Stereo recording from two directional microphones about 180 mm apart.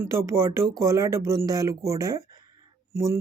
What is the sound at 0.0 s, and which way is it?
Speech, 15° right (ahead or behind).